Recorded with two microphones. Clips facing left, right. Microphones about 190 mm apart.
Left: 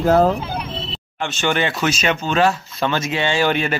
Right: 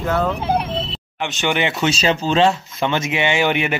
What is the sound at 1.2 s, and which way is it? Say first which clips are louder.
Speech: even; 15° right (ahead or behind).